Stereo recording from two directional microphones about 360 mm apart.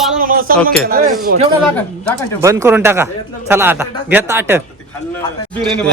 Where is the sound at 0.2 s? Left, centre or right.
Right.